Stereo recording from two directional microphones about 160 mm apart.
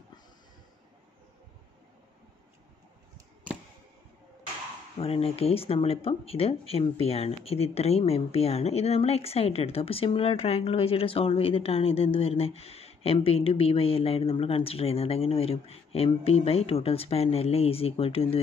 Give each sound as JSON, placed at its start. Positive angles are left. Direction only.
{"t": 4.9, "sound": "speech", "side_deg": 40}